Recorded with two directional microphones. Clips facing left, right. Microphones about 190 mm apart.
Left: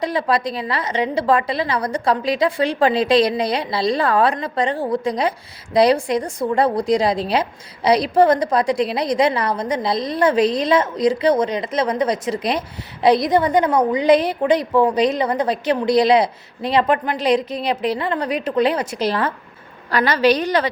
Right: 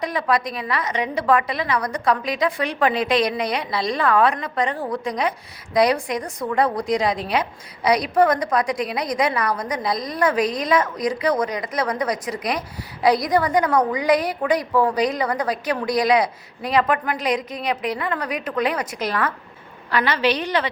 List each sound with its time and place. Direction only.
0.0 s a woman's voice: 30° left (ahead or behind)